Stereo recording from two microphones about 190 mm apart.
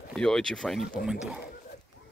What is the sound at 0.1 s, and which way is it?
Speech, 5° left (ahead or behind).